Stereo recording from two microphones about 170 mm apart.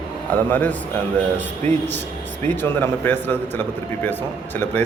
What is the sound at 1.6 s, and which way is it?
Speech, 40° right (ahead or behind).